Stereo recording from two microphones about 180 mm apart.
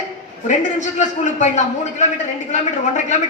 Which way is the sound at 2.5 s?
45° left (ahead or behind).